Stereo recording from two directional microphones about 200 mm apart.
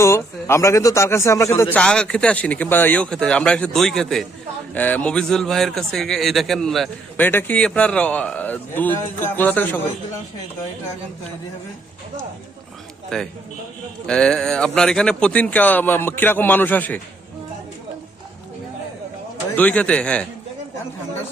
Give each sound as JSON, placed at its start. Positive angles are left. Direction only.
{"t": 0.0, "sound": "speech", "side_deg": 15}
{"t": 1.7, "sound": "a man's voice", "side_deg": 5}
{"t": 13.1, "sound": "a man's voice", "side_deg": 5}
{"t": 19.5, "sound": "a man's voice", "side_deg": 5}